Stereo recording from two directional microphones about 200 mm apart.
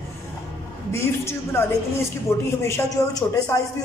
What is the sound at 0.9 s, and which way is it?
Speech, 15° left (ahead or behind).